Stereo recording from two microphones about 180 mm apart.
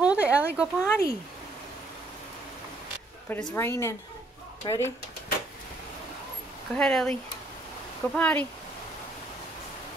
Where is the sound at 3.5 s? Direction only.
15° left (ahead or behind).